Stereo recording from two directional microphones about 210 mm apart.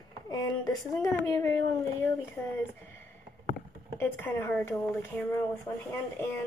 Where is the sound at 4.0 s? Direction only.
10° left (ahead or behind).